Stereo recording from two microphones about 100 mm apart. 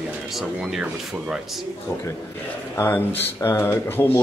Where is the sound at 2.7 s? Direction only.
20° left (ahead or behind).